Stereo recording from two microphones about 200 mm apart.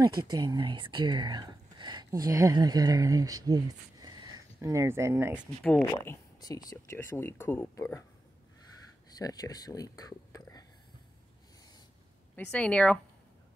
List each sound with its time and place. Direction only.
0.0 s speech: 20° right (ahead or behind)
5.8 s speech: 15° left (ahead or behind)
9.2 s speech: 20° left (ahead or behind)
12.4 s speech: 5° left (ahead or behind)